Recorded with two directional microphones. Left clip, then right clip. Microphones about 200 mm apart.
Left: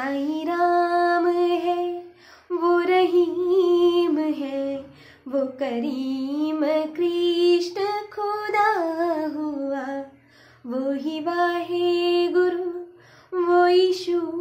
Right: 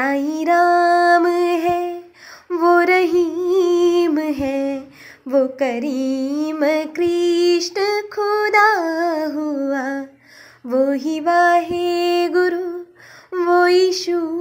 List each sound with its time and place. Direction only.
0.0 s music: 40° right (ahead or behind)
2.5 s female singing: 40° right (ahead or behind)
5.3 s a sound: 35° right (ahead or behind)
5.9 s music: 90° right
6.2 s female singing: 35° right (ahead or behind)
10.7 s music: 40° right (ahead or behind)
13.3 s a sound: 40° right (ahead or behind)